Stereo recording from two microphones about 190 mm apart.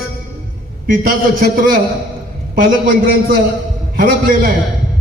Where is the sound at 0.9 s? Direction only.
50° right (ahead or behind).